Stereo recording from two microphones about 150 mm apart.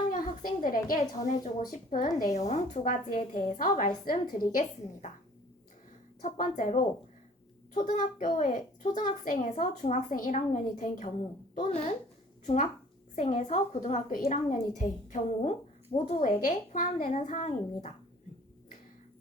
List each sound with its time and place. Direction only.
0.1 s a sound: 70° left (ahead or behind)
1.7 s a woman's voice: 60° left (ahead or behind)
6.2 s a woman's voice: 60° left (ahead or behind)
13.1 s a woman's voice: 50° left (ahead or behind)
16.2 s a woman's voice: 60° left (ahead or behind)